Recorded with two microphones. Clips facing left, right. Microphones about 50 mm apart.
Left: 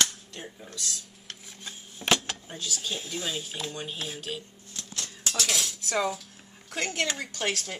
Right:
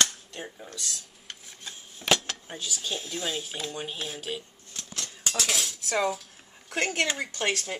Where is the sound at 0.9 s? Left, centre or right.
Centre.